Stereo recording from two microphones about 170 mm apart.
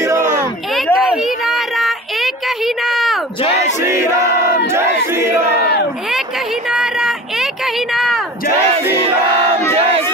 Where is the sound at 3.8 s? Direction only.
15° right (ahead or behind).